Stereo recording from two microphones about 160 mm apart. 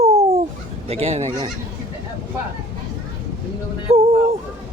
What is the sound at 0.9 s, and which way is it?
Speech, 40° right (ahead or behind).